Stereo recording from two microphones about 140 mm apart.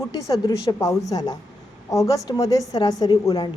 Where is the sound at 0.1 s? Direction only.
25° left (ahead or behind).